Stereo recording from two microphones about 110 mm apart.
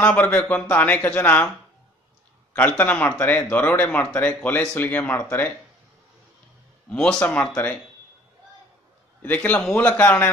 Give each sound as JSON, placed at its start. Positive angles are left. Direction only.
{"t": 0.0, "sound": "speech", "side_deg": 15}
{"t": 2.5, "sound": "speech", "side_deg": 15}
{"t": 6.9, "sound": "speech", "side_deg": 10}
{"t": 9.2, "sound": "speech", "side_deg": 15}